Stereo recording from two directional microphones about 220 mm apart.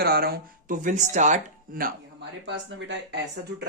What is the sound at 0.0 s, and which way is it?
Speech, 45° right (ahead or behind).